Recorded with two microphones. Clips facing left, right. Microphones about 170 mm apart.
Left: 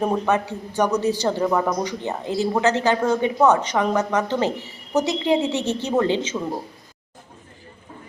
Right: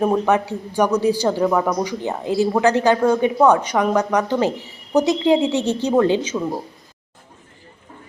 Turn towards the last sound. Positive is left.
turn(degrees=0)  # may be behind; listen again after turning